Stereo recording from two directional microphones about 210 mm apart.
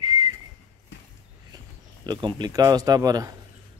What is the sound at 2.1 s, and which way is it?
Speech, 20° right (ahead or behind).